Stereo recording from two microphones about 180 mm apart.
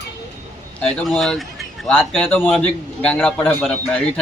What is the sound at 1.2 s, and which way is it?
A man's voice, centre (ahead or behind).